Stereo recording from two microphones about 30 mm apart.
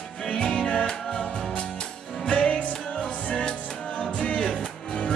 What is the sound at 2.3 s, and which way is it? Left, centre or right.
Music, left.